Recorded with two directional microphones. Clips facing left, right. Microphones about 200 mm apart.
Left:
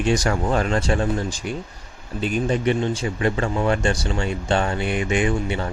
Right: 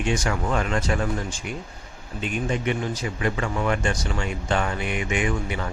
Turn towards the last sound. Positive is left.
turn(degrees=30)  # may be behind; listen again after turning